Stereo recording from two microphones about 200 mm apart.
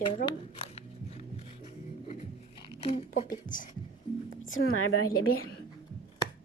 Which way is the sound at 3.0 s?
40° left (ahead or behind).